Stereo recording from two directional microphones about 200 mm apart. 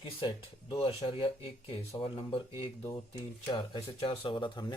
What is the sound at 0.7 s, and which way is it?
Speech, 30° left (ahead or behind).